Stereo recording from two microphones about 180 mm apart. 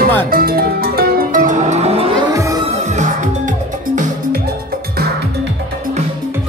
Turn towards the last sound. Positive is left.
turn(degrees=-60)  # may be behind; listen again after turning